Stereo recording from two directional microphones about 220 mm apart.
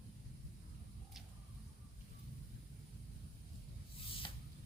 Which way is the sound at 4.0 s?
25° left (ahead or behind).